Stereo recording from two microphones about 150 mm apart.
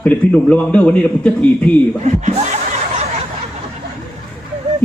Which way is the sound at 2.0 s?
50° right (ahead or behind).